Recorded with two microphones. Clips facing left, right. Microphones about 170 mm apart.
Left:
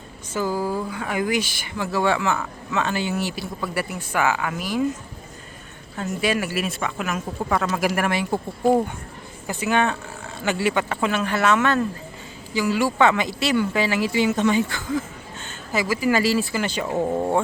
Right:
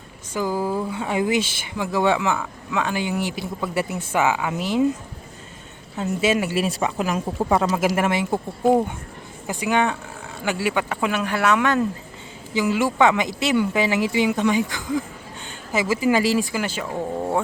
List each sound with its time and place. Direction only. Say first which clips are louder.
0.3 s speech: right 1 dB; 20° right (ahead or behind)
6.0 s speech: right 3 dB; 25° right (ahead or behind)
9.5 s speech: even; 15° right (ahead or behind)